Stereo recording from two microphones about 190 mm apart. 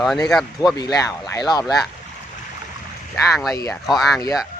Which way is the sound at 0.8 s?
20° left (ahead or behind).